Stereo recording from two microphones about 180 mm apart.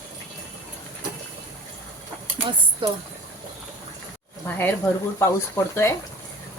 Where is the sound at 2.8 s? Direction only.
25° right (ahead or behind).